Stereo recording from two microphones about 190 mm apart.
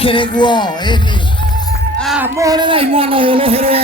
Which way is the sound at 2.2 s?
20° right (ahead or behind).